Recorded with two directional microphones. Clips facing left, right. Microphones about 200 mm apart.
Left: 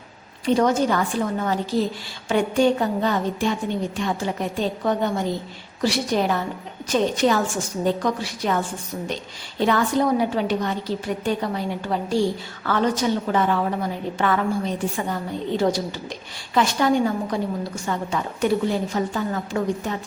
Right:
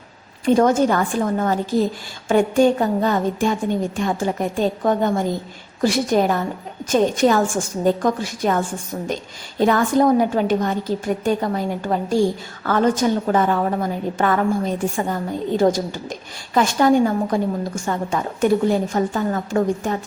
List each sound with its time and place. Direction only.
0.4 s a woman's voice: 50° right (ahead or behind)